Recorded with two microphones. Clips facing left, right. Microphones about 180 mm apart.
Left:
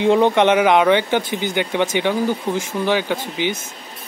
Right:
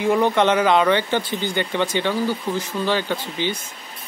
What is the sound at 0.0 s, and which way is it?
A man's voice, 20° left (ahead or behind).